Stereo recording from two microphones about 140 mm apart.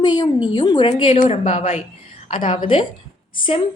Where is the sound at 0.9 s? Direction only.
60° left (ahead or behind).